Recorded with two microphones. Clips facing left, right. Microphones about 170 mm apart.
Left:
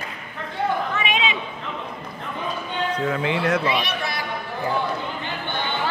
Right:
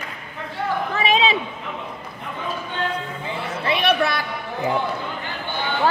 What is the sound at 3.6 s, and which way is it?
Chatter, 60° right (ahead or behind).